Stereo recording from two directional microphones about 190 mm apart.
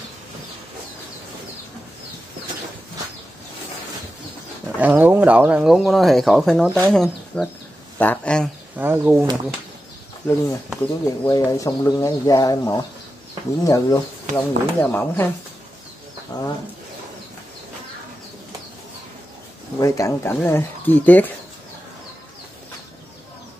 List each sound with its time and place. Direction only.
4.7 s speech: 10° right (ahead or behind)
8.7 s speech: 10° right (ahead or behind)
10.8 s speech: 20° left (ahead or behind)
16.3 s speech: 20° left (ahead or behind)
19.8 s speech: 15° left (ahead or behind)